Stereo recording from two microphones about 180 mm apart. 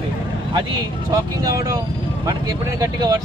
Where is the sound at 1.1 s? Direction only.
20° right (ahead or behind).